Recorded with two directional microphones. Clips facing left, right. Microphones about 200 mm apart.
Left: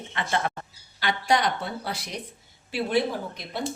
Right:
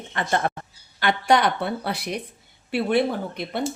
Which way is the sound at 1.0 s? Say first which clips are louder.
Right 4 dB; 60° right (ahead or behind).